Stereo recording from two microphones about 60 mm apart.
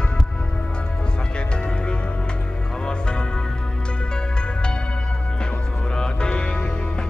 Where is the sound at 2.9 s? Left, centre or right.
Centre.